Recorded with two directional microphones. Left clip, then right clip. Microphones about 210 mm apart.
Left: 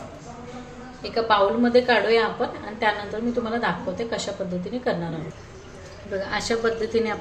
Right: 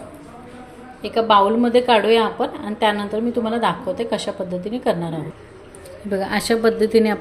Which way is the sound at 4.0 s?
35° right (ahead or behind).